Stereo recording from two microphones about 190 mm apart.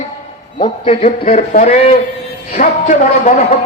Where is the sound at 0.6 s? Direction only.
35° left (ahead or behind).